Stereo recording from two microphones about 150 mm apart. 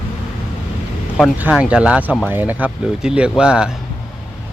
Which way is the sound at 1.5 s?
5° right (ahead or behind).